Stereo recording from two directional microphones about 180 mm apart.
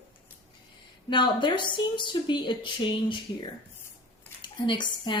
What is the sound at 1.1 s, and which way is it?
Speech, 25° left (ahead or behind).